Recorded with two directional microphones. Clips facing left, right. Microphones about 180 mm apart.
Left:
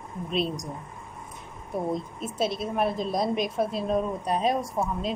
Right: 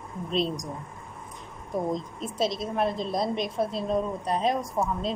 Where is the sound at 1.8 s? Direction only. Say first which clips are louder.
Even; 10° left (ahead or behind).